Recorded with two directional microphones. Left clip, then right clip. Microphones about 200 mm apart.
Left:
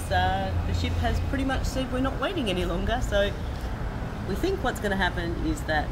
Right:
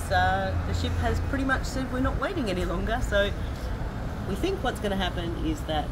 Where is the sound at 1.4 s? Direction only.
5° left (ahead or behind).